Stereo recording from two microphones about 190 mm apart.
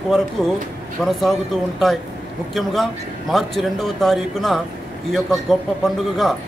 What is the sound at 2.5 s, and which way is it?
A man's voice, centre (ahead or behind).